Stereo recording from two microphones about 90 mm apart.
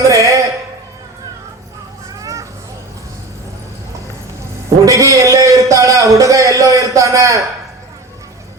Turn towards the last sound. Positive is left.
turn(degrees=-35)  # may be behind; listen again after turning